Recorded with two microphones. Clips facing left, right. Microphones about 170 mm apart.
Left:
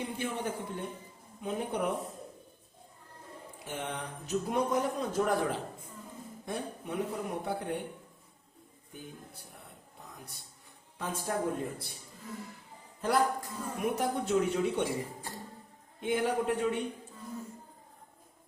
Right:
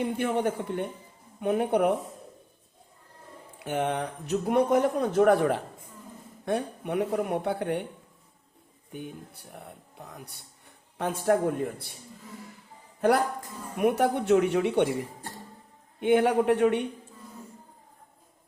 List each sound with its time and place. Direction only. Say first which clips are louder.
0.0 s speech: right 8 dB; 65° right (ahead or behind)
3.6 s speech: right 10 dB; 65° right (ahead or behind)
8.9 s speech: right 7 dB; 70° right (ahead or behind)
10.9 s a woman's voice: right 11 dB; 70° right (ahead or behind)
13.7 s speech: right 8 dB; 65° right (ahead or behind)